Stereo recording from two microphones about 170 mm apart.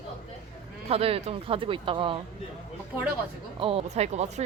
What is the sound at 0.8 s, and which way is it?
Speech, 35° right (ahead or behind).